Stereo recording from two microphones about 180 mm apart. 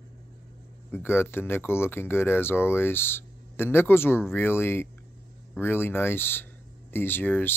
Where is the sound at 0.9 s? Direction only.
10° left (ahead or behind).